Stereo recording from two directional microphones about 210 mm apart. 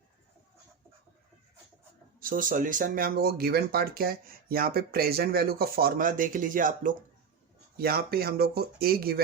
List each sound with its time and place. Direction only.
2.2 s speech: 40° right (ahead or behind)